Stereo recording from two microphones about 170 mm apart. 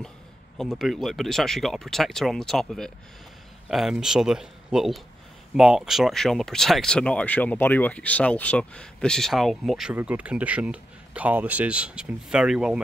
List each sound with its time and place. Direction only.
0.6 s speech: centre (ahead or behind)